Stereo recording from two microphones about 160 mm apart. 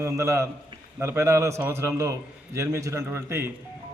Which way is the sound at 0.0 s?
20° right (ahead or behind).